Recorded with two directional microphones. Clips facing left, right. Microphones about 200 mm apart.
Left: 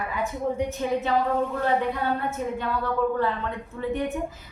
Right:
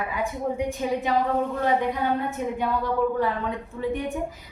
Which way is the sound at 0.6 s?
15° right (ahead or behind).